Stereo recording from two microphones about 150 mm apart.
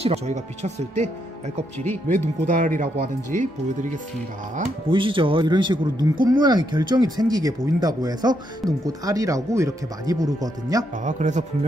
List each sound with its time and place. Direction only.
0.0 s speech: 45° right (ahead or behind)
1.9 s speech: 15° left (ahead or behind)
2.5 s speech: 60° right (ahead or behind)
4.8 s speech: 35° right (ahead or behind)
11.1 s speech: 55° right (ahead or behind)